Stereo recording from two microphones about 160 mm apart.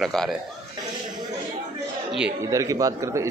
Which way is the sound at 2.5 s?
20° right (ahead or behind).